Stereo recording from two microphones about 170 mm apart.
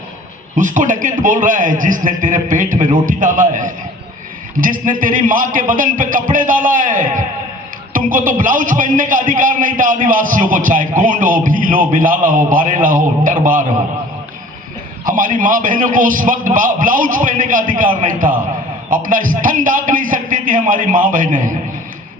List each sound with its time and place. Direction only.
0.5 s a man's voice: 50° right (ahead or behind)
15.0 s a man's voice: 50° right (ahead or behind)